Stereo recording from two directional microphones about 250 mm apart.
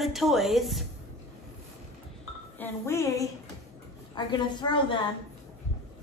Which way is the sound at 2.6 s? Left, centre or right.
Centre.